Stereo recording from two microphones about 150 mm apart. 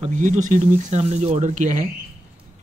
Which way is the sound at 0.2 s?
55° right (ahead or behind).